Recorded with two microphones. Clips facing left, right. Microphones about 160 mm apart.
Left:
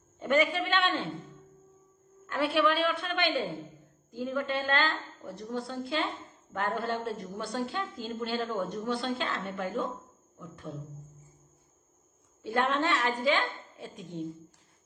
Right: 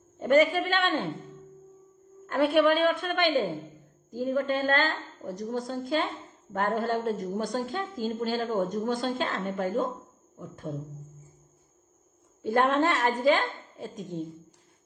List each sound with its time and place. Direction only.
0.2 s a woman's voice: 45° right (ahead or behind)
2.2 s a woman's voice: 50° right (ahead or behind)
12.4 s a woman's voice: 45° right (ahead or behind)